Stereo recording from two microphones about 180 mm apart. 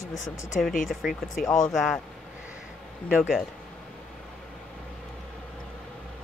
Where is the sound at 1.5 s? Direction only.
15° left (ahead or behind).